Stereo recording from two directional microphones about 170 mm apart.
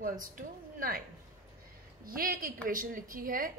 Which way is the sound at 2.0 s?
55° right (ahead or behind).